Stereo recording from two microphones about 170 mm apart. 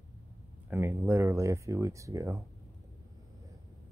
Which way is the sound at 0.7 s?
15° right (ahead or behind).